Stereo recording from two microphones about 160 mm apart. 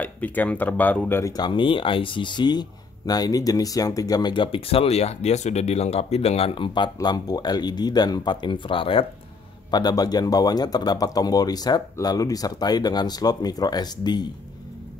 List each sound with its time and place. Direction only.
0.0 s speech: 10° left (ahead or behind)
1.3 s speech: 30° left (ahead or behind)